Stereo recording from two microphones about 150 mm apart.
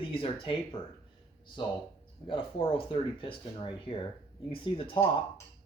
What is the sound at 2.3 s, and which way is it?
Speech, 35° left (ahead or behind).